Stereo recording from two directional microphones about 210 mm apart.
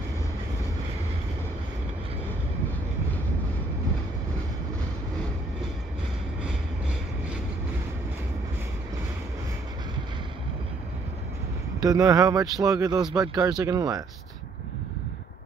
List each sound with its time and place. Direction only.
11.8 s speech: 15° right (ahead or behind)